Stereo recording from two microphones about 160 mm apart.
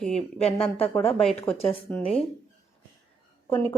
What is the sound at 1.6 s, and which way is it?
Speech, 35° left (ahead or behind).